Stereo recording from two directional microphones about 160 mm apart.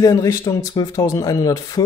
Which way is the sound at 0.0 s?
25° left (ahead or behind).